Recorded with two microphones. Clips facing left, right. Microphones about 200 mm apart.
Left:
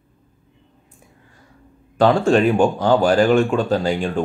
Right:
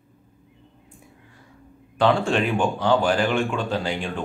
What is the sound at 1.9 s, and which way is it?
Speech, 40° left (ahead or behind).